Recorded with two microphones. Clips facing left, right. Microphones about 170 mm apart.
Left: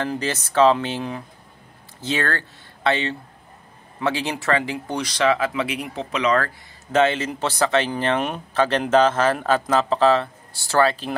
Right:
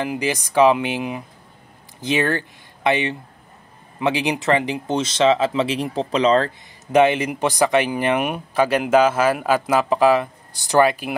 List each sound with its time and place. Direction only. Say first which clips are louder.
0.0 s speech: right 2 dB; 15° right (ahead or behind); by 6.5 s 30° right (ahead or behind)
6.9 s speech: right 3 dB; 15° right (ahead or behind)